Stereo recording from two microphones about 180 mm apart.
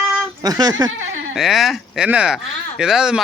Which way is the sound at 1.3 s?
Centre (ahead or behind).